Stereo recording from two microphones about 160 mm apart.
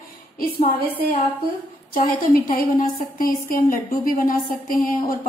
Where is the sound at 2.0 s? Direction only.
65° left (ahead or behind).